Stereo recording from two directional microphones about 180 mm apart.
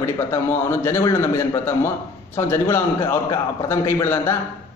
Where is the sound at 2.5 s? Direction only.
15° left (ahead or behind).